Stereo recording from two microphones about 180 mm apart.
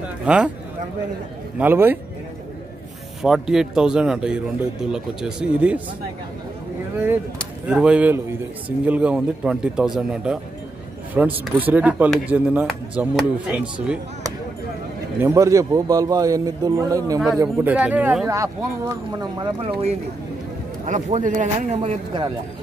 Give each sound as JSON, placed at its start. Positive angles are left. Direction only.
{"t": 0.2, "sound": "speech", "side_deg": -5}
{"t": 1.6, "sound": "speech", "side_deg": -10}
{"t": 3.2, "sound": "speech", "side_deg": 0}
{"t": 7.6, "sound": "speech", "side_deg": -5}
{"t": 15.1, "sound": "a man's voice", "side_deg": -15}
{"t": 20.8, "sound": "speech", "side_deg": -40}